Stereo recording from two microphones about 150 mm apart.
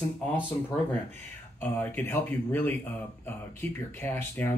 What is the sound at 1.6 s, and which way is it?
Speech, 15° left (ahead or behind).